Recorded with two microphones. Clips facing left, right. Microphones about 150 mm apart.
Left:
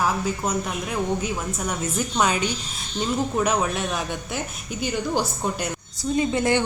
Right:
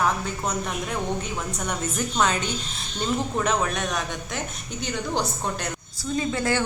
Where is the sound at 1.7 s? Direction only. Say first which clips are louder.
Left 1 dB; 10° left (ahead or behind).